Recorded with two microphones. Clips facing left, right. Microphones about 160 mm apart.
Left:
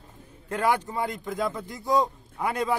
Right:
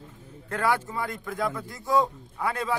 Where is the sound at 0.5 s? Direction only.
15° left (ahead or behind).